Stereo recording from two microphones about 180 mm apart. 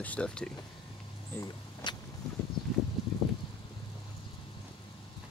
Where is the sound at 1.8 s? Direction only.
25° left (ahead or behind).